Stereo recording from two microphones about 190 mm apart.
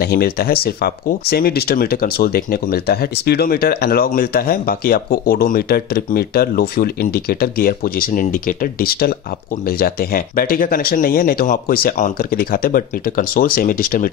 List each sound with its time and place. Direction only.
0.0 s speech: 55° left (ahead or behind)